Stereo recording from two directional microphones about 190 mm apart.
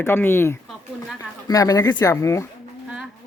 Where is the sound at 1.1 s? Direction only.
20° left (ahead or behind).